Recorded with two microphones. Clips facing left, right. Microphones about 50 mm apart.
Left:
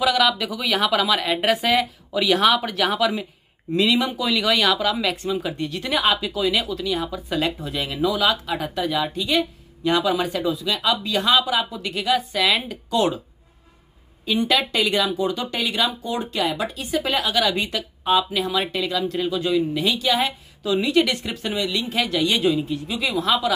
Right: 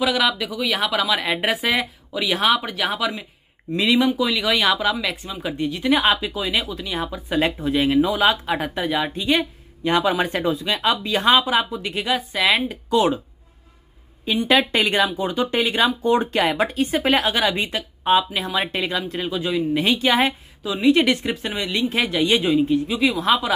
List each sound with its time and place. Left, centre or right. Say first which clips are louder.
0.2 s speech: left 1 dB; centre
3.7 s speech: even; right
4.0 s speech: right 2 dB; centre
4.6 s speech: even; centre
12.5 s speech: right 3 dB; centre
14.5 s speech: right 4 dB; right
19.7 s speech: right 3 dB; right
21.5 s speech: left 1 dB; right